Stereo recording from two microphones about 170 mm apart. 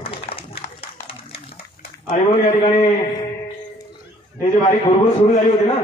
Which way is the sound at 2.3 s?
35° left (ahead or behind).